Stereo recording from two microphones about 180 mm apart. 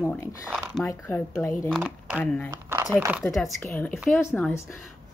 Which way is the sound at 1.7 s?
5° right (ahead or behind).